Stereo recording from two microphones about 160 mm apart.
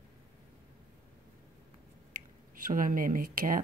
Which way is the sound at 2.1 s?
60° right (ahead or behind).